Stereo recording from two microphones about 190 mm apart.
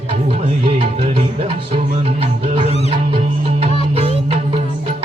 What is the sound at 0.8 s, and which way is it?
Music, 30° right (ahead or behind).